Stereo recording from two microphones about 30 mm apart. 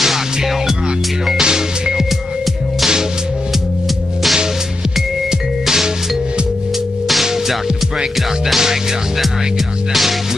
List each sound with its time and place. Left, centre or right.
1.4 s music: right